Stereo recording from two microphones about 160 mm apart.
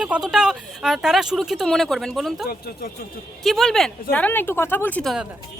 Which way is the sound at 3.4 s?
Centre (ahead or behind).